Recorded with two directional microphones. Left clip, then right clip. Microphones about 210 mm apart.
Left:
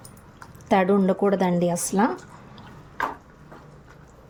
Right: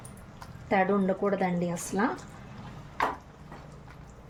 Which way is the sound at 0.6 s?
45° left (ahead or behind).